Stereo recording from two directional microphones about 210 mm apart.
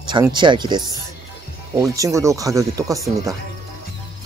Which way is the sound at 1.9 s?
15° right (ahead or behind).